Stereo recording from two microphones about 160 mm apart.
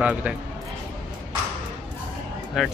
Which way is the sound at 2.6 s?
Centre (ahead or behind).